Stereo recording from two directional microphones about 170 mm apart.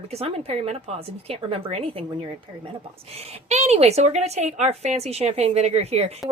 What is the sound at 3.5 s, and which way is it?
A woman's voice, 40° right (ahead or behind).